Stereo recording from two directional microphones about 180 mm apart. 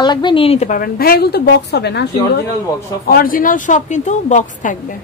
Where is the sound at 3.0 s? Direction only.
55° left (ahead or behind).